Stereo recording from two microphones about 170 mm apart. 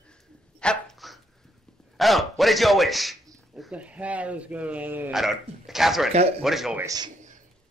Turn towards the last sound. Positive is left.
turn(degrees=-25)  # may be behind; listen again after turning